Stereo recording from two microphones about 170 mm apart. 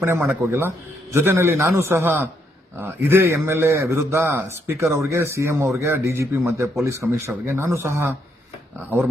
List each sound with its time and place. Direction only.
0.0 s a man's voice: 15° right (ahead or behind)